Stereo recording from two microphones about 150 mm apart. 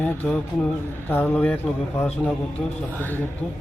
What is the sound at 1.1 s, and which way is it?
Speech, 10° left (ahead or behind).